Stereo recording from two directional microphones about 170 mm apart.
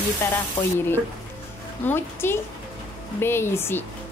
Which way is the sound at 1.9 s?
15° left (ahead or behind).